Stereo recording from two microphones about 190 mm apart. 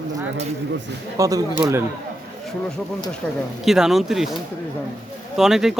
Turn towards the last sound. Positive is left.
turn(degrees=0)  # may be behind; listen again after turning